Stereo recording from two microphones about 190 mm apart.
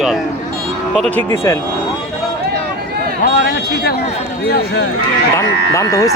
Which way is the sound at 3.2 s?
55° left (ahead or behind).